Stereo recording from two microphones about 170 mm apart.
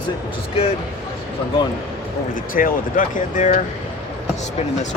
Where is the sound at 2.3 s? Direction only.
55° left (ahead or behind).